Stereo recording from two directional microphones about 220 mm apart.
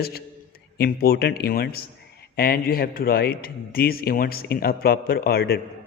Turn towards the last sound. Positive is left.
turn(degrees=45)  # may be behind; listen again after turning